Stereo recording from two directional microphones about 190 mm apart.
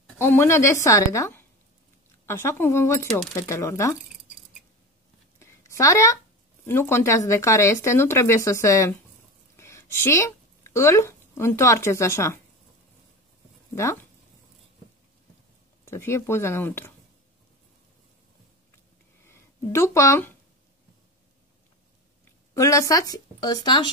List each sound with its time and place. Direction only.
0.2 s speech: 15° left (ahead or behind)
5.4 s a sound: 15° left (ahead or behind)
6.6 s speech: 15° left (ahead or behind)
13.7 s speech: 15° left (ahead or behind)
15.8 s speech: 15° left (ahead or behind)
19.2 s speech: 15° left (ahead or behind)
22.5 s a woman's voice: 15° left (ahead or behind)